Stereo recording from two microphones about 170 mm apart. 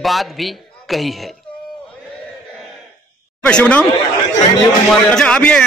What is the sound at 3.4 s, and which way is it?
Speech, 5° left (ahead or behind).